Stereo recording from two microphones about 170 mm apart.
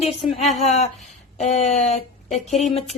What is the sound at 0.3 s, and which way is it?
A woman's voice, 40° left (ahead or behind).